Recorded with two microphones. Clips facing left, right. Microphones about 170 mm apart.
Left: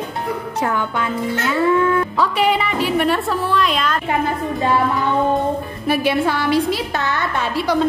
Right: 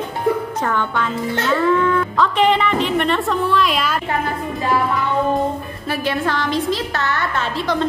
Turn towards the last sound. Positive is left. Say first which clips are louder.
# left 2 dB
turn(degrees=10)  # may be behind; listen again after turning